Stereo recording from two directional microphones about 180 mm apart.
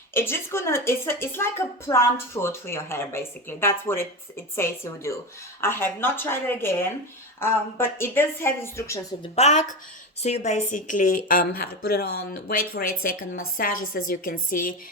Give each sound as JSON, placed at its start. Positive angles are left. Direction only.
{"t": 0.1, "sound": "a woman's voice", "side_deg": 15}
{"t": 9.3, "sound": "a woman's voice", "side_deg": 40}